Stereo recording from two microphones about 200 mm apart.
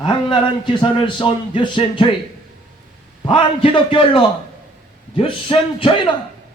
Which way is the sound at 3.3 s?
25° left (ahead or behind).